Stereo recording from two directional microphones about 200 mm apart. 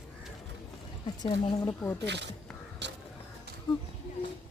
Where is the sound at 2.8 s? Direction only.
60° right (ahead or behind).